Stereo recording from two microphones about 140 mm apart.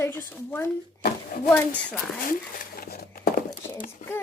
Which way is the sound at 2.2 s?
90° left.